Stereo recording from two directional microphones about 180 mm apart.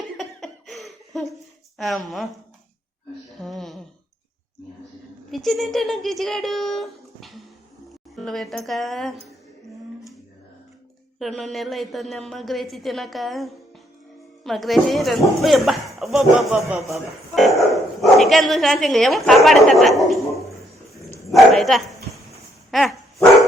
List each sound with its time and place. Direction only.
0.2 s laughter: centre (ahead or behind)
3.4 s a sound: centre (ahead or behind)
5.3 s a woman's voice: centre (ahead or behind)
11.2 s a woman's voice: centre (ahead or behind)
21.2 s dog: centre (ahead or behind)